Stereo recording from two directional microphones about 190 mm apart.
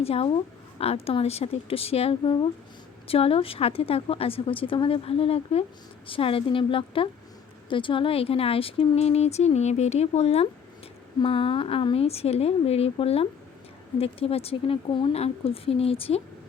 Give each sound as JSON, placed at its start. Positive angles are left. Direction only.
{"t": 0.0, "sound": "a woman's voice", "side_deg": 30}